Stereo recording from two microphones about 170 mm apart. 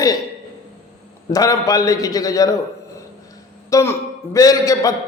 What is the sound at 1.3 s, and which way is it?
A man's voice, 20° left (ahead or behind).